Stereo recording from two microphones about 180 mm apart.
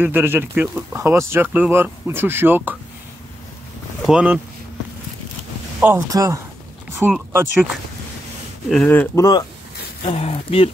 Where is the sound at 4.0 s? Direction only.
5° right (ahead or behind).